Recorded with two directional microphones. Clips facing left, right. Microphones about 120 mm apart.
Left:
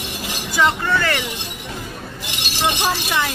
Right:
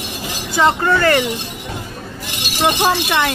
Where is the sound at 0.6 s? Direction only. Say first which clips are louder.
Right 4 dB; 45° right (ahead or behind).